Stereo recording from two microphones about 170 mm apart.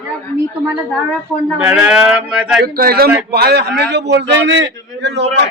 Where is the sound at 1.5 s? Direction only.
5° right (ahead or behind).